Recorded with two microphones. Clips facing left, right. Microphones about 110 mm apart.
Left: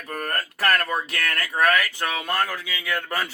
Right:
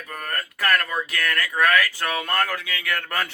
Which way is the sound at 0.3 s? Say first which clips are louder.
Even; 35° left (ahead or behind).